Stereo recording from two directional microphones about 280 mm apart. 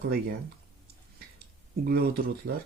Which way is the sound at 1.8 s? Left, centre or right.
Right.